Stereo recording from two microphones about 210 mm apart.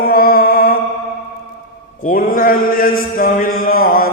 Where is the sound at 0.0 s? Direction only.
45° left (ahead or behind).